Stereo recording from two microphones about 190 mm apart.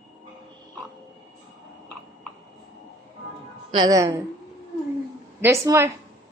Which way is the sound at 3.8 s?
20° right (ahead or behind).